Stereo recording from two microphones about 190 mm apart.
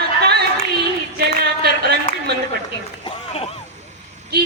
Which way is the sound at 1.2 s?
55° right (ahead or behind).